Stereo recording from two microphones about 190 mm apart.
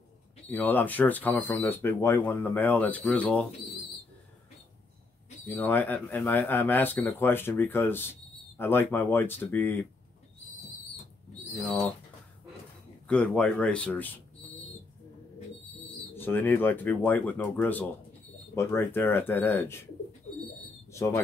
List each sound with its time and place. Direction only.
0.5 s speech: 10° left (ahead or behind)
5.5 s speech: 10° left (ahead or behind)
13.0 s a man's voice: 5° left (ahead or behind)
16.2 s speech: 10° left (ahead or behind)
20.9 s speech: 15° left (ahead or behind)